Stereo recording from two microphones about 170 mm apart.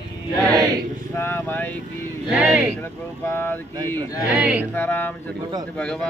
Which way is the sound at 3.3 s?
10° left (ahead or behind).